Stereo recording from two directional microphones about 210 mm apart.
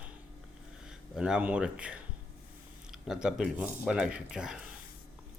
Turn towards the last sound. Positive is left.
turn(degrees=-5)  # may be behind; listen again after turning